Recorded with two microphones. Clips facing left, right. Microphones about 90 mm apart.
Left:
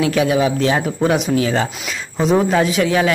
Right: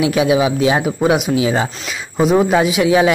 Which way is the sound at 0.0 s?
15° right (ahead or behind).